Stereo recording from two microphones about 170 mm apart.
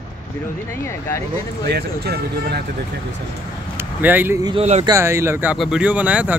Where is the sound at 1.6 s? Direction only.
70° right (ahead or behind).